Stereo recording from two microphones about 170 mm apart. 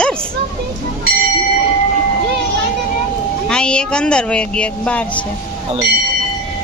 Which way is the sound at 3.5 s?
5° left (ahead or behind).